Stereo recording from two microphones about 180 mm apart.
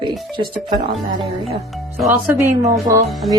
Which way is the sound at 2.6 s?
15° right (ahead or behind).